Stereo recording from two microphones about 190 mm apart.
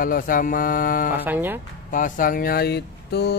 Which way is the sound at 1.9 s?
45° left (ahead or behind).